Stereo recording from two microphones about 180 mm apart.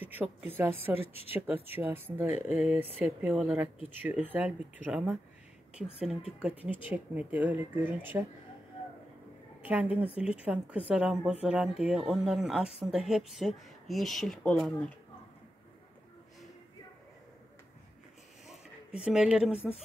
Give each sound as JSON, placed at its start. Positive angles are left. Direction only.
{"t": 0.1, "sound": "speech", "side_deg": -10}
{"t": 1.0, "sound": "speech", "side_deg": 30}
{"t": 1.3, "sound": "speech", "side_deg": -10}
{"t": 6.4, "sound": "speech", "side_deg": -10}
{"t": 9.7, "sound": "speech", "side_deg": -10}
{"t": 19.0, "sound": "speech", "side_deg": -5}